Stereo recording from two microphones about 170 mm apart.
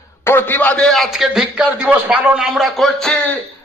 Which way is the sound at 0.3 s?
10° left (ahead or behind).